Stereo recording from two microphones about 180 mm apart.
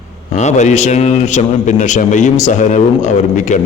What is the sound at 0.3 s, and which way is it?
A man's voice, 40° left (ahead or behind).